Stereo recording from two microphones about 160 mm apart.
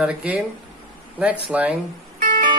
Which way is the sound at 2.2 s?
60° right (ahead or behind).